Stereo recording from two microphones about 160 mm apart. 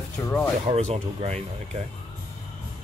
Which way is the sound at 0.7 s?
45° right (ahead or behind).